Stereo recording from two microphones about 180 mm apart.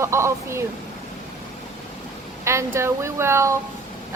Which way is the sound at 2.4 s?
15° right (ahead or behind).